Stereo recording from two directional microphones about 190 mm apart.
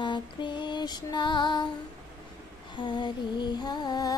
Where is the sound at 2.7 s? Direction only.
25° left (ahead or behind).